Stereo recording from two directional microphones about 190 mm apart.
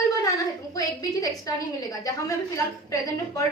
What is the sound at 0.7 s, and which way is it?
A woman's voice, 20° left (ahead or behind).